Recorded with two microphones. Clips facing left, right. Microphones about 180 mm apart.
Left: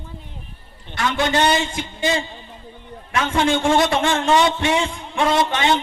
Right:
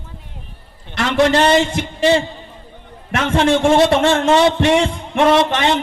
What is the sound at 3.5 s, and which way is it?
A man's voice, 30° right (ahead or behind).